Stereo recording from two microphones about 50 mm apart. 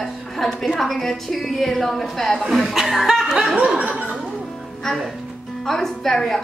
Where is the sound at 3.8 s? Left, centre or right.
Right.